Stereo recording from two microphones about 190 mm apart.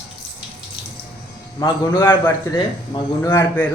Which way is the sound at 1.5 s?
20° left (ahead or behind).